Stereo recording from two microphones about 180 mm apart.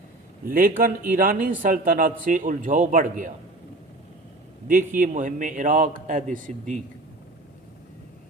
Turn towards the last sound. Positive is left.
turn(degrees=-45)  # may be behind; listen again after turning